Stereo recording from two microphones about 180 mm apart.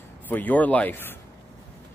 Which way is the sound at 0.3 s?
10° left (ahead or behind).